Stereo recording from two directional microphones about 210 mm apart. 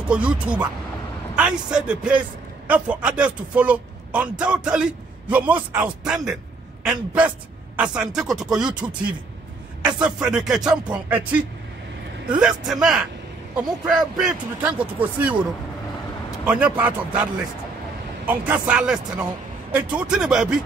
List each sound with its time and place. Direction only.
0.1 s a man's voice: 5° right (ahead or behind)
16.4 s a man's voice: 5° right (ahead or behind)